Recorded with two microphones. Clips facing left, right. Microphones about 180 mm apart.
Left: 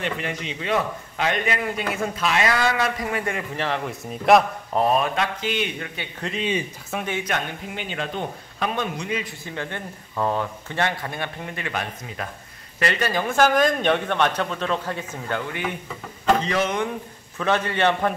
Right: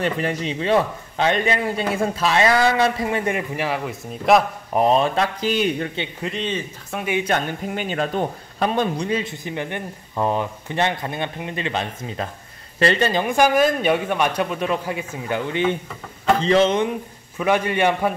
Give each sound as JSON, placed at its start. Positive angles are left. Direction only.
{"t": 0.0, "sound": "a man's voice", "side_deg": -40}
{"t": 4.7, "sound": "a man's voice", "side_deg": -25}
{"t": 6.2, "sound": "speech", "side_deg": 5}
{"t": 7.2, "sound": "a man's voice", "side_deg": -40}
{"t": 9.4, "sound": "speech", "side_deg": -15}
{"t": 15.9, "sound": "a sound", "side_deg": 5}
{"t": 16.4, "sound": "speech", "side_deg": -25}
{"t": 17.4, "sound": "speech", "side_deg": -10}